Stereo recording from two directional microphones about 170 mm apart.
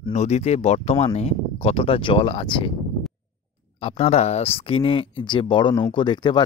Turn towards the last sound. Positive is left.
turn(degrees=25)  # may be behind; listen again after turning